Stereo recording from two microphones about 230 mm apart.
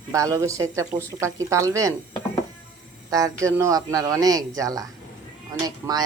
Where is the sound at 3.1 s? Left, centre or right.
Centre.